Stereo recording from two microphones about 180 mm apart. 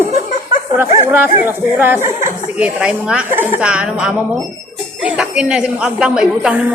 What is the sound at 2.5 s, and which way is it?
A woman's voice, 5° right (ahead or behind).